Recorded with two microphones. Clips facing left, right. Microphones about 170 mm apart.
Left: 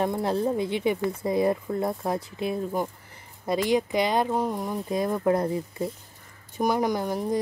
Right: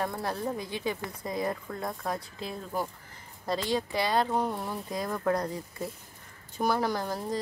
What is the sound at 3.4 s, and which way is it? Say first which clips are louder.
Speech: left 6 dB; 15° left (ahead or behind).